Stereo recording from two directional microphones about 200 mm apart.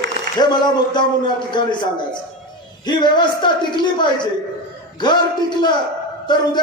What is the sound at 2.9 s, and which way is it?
Speech, 20° left (ahead or behind).